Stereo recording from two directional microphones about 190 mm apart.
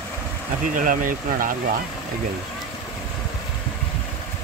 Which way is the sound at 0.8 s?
45° right (ahead or behind).